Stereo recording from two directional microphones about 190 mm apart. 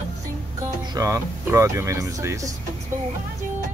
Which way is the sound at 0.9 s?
15° right (ahead or behind).